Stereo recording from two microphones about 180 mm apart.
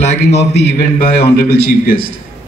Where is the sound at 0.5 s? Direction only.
65° left (ahead or behind).